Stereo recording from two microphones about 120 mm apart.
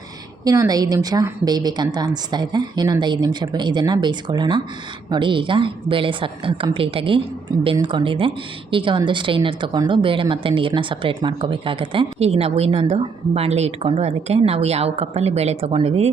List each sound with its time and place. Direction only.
0.4 s a woman's voice: 30° right (ahead or behind); by 16.0 s 55° right (ahead or behind)